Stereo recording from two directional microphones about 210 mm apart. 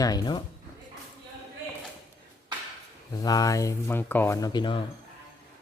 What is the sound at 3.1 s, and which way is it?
Speech, 15° left (ahead or behind).